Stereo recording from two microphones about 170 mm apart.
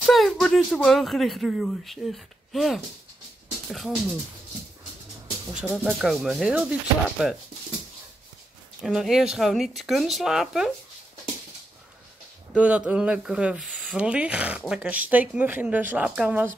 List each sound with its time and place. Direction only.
0.0 s speech: centre (ahead or behind)
5.5 s speech: centre (ahead or behind)
8.8 s speech: centre (ahead or behind)
12.5 s speech: 5° right (ahead or behind)